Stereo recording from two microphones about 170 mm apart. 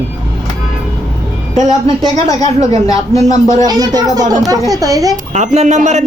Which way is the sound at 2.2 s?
20° left (ahead or behind).